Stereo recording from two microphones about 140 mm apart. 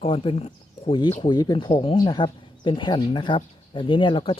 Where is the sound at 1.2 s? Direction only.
30° left (ahead or behind).